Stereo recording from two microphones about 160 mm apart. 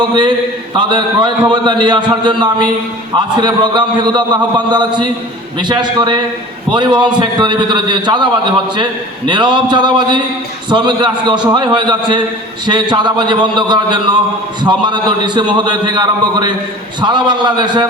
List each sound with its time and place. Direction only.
0.8 s a man's voice: 30° right (ahead or behind)